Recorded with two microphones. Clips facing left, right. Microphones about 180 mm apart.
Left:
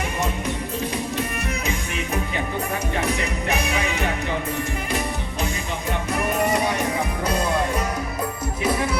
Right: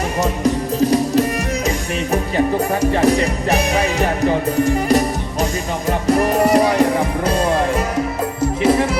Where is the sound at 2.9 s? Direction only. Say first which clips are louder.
Right 9 dB; 35° right (ahead or behind).